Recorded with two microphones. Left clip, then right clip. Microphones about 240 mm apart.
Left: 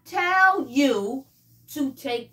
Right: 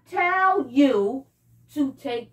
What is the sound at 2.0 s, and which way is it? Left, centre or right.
Child singing, left.